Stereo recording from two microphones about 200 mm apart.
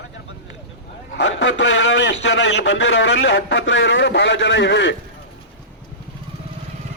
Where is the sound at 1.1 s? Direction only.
70° left (ahead or behind).